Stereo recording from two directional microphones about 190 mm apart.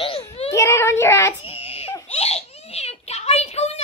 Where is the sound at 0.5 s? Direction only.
15° left (ahead or behind).